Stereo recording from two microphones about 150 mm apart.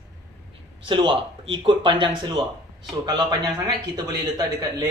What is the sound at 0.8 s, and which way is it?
A man's voice, 35° right (ahead or behind).